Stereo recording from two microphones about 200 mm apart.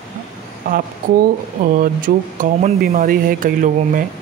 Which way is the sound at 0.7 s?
45° right (ahead or behind).